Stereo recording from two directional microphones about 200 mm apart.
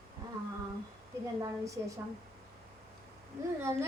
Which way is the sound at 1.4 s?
15° right (ahead or behind).